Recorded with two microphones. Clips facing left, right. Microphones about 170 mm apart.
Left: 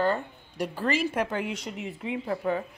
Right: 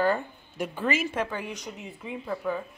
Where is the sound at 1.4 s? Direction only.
25° left (ahead or behind).